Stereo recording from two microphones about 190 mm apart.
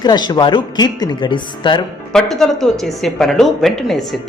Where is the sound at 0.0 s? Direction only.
20° left (ahead or behind).